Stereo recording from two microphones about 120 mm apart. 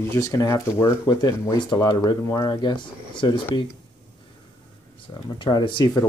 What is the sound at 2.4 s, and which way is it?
Speech, 40° left (ahead or behind).